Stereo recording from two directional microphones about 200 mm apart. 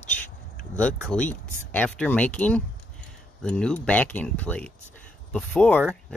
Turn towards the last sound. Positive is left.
turn(degrees=5)  # may be behind; listen again after turning